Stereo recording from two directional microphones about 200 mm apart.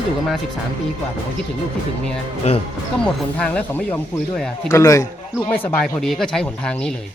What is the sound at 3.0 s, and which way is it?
Speech, 5° left (ahead or behind).